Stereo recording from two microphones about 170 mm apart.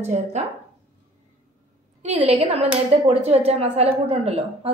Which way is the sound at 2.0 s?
40° right (ahead or behind).